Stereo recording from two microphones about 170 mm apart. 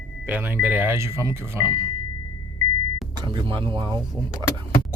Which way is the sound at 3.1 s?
30° right (ahead or behind).